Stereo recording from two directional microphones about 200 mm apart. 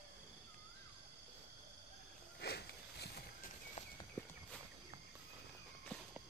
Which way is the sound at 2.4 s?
55° left (ahead or behind).